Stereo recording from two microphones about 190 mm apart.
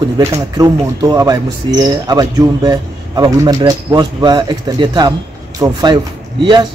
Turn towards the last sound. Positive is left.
turn(degrees=-25)  # may be behind; listen again after turning